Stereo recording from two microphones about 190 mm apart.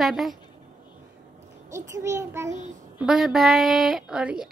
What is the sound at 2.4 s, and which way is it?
Speech, 40° right (ahead or behind).